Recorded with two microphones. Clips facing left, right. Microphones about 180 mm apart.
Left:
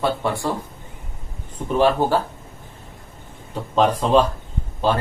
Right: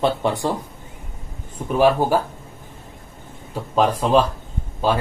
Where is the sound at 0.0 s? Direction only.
20° right (ahead or behind).